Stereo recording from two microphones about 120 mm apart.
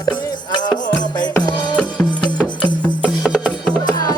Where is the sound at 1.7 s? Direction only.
10° left (ahead or behind).